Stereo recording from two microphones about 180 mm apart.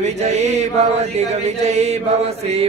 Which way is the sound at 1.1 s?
40° right (ahead or behind).